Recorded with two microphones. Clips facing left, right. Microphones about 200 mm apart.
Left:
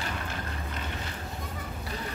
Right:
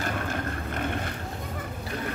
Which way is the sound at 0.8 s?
55° right (ahead or behind).